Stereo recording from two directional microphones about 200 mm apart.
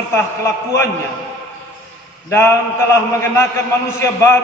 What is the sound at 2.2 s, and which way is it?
A man's voice, 15° left (ahead or behind).